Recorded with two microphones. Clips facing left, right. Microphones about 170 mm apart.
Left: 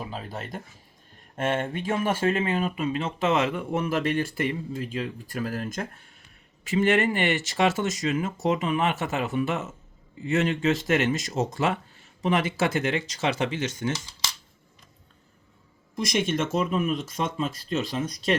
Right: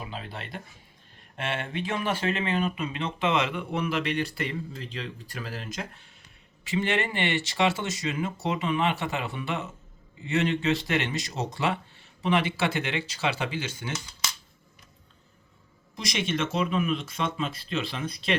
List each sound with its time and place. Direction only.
0.1 s speech: 40° left (ahead or behind)
16.0 s speech: 50° left (ahead or behind)